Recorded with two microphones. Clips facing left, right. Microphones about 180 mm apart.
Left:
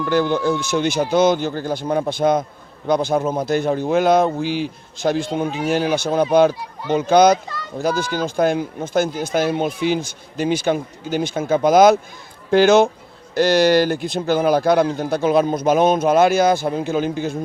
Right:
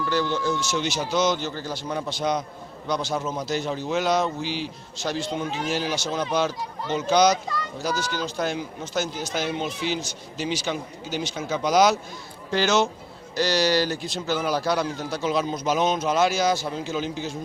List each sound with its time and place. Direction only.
0.0 s speech: 55° left (ahead or behind)